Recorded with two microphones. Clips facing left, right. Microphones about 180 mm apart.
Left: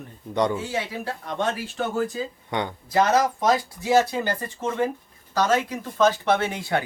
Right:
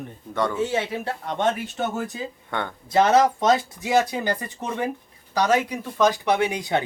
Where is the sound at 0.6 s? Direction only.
25° right (ahead or behind).